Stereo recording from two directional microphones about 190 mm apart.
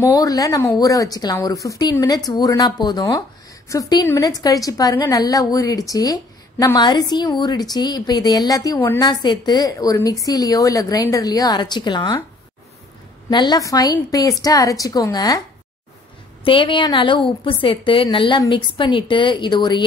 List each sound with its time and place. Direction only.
0.0 s a woman's voice: 20° left (ahead or behind)
9.0 s a woman's voice: 25° left (ahead or behind)
13.3 s a woman's voice: 25° left (ahead or behind)
16.4 s a woman's voice: 25° left (ahead or behind)